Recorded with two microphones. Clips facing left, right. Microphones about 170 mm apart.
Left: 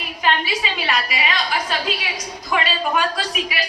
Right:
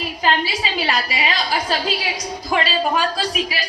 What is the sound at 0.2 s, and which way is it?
A woman's voice, 30° right (ahead or behind).